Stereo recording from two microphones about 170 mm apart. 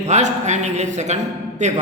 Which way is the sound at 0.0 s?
45° right (ahead or behind).